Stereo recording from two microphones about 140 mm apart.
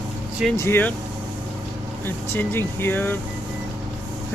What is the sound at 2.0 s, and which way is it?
Speech, 15° left (ahead or behind).